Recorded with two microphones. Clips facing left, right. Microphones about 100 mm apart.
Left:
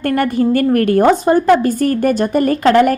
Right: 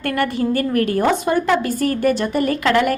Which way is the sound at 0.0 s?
40° left (ahead or behind).